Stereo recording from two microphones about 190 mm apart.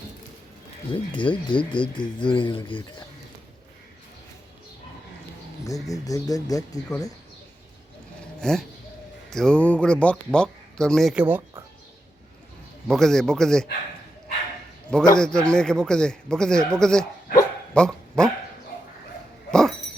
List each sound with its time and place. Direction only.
0.9 s speech: 25° left (ahead or behind)
5.6 s speech: 15° left (ahead or behind)
8.4 s speech: 5° left (ahead or behind)
12.9 s speech: centre (ahead or behind)
15.2 s speech: 5° left (ahead or behind)
17.7 s dog: 5° left (ahead or behind)
19.5 s dog: 5° left (ahead or behind)